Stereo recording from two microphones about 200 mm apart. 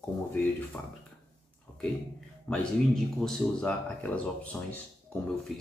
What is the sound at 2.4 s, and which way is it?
Speech, centre (ahead or behind).